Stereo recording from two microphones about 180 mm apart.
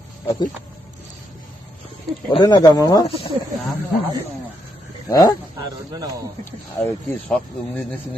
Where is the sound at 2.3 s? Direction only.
25° left (ahead or behind).